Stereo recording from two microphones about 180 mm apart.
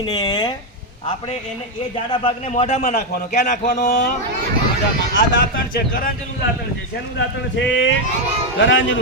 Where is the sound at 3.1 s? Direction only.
50° left (ahead or behind).